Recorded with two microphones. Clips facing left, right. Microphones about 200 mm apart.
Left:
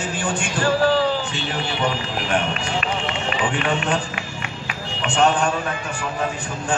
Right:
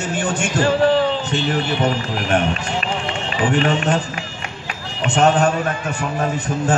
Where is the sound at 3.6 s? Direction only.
40° right (ahead or behind).